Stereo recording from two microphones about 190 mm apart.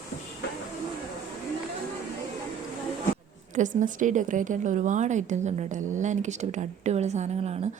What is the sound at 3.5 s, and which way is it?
A woman's voice, 40° right (ahead or behind).